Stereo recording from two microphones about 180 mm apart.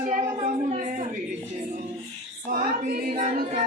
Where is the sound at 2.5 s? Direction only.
50° right (ahead or behind).